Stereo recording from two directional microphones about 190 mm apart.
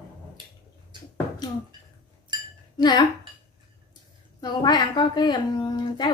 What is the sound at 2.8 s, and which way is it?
Speech, 20° left (ahead or behind).